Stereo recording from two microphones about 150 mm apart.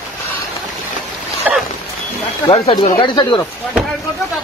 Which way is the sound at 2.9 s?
30° left (ahead or behind).